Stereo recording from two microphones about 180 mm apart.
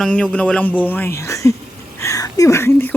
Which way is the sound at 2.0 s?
20° left (ahead or behind).